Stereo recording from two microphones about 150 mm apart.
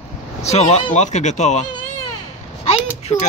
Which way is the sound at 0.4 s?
45° left (ahead or behind).